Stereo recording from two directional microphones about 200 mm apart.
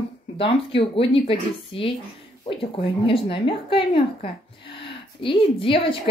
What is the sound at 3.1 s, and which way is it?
Speech, 25° left (ahead or behind).